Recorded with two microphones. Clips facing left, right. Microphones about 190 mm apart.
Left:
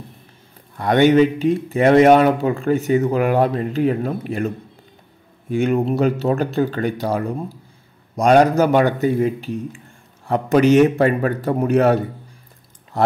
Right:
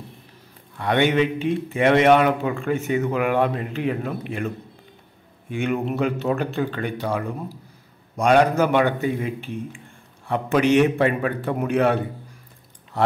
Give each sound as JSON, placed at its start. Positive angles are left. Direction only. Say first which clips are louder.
{"t": 0.7, "sound": "speech", "louder": "left 6 dB", "side_deg": 40}
{"t": 5.5, "sound": "speech", "louder": "left 6 dB", "side_deg": 35}